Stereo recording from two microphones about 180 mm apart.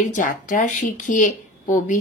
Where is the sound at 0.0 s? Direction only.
45° left (ahead or behind).